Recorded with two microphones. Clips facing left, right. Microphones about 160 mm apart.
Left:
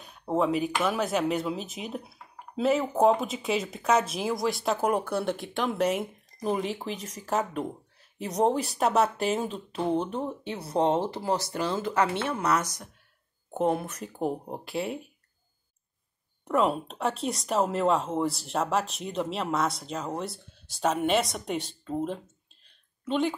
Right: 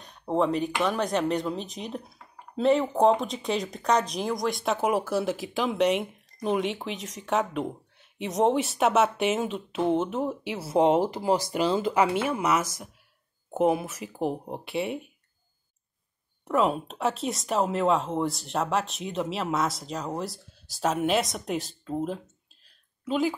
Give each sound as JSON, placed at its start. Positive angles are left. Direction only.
{"t": 0.0, "sound": "speech", "side_deg": 5}
{"t": 16.4, "sound": "speech", "side_deg": 0}